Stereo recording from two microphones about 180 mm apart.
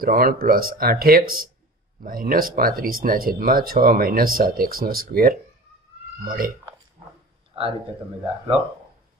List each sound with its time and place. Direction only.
0.0 s speech: 55° right (ahead or behind)
7.5 s a man's voice: 30° right (ahead or behind)